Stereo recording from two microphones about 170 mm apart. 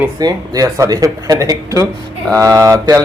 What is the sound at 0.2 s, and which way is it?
A man's voice, 20° right (ahead or behind).